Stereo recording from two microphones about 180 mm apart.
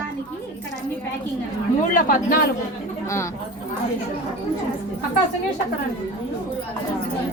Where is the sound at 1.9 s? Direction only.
45° left (ahead or behind).